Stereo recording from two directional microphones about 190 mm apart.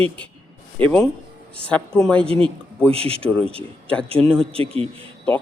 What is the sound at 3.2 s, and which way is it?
Speech, 5° left (ahead or behind).